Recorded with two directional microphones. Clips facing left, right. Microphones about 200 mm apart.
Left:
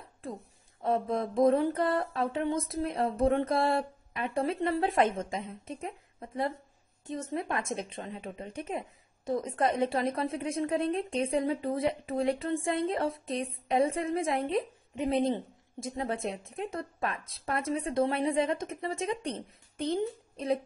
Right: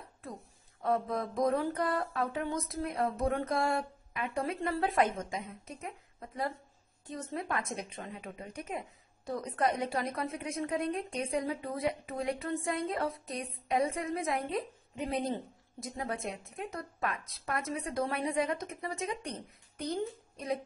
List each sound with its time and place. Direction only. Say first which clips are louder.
0.8 s a woman's voice: left 2 dB; 25° left (ahead or behind)